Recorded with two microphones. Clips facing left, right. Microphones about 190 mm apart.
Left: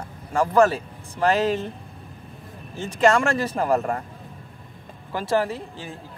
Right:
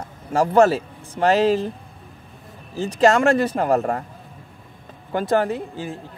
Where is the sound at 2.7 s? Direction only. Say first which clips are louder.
Right 3 dB; 35° right (ahead or behind).